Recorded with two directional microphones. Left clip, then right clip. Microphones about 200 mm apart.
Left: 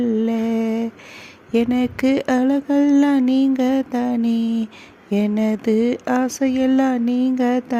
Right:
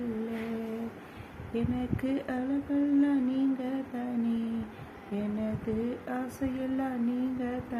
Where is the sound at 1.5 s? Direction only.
55° left (ahead or behind).